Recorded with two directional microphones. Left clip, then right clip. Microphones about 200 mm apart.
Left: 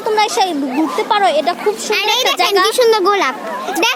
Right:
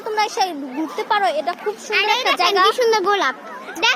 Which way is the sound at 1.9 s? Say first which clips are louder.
Left 1 dB; 40° left (ahead or behind).